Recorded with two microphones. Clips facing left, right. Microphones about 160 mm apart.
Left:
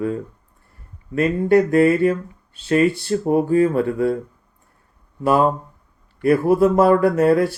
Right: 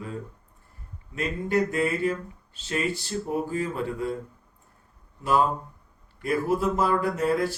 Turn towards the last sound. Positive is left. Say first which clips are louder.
# left 9 dB
turn(degrees=65)  # may be behind; listen again after turning